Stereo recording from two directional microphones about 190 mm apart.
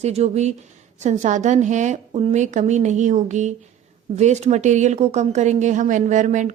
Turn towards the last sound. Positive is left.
turn(degrees=-40)  # may be behind; listen again after turning